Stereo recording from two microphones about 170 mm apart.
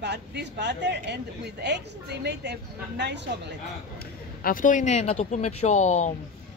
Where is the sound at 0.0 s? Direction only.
85° right.